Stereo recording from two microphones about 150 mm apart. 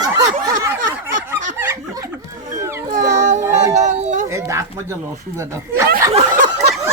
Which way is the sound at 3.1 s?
55° right (ahead or behind).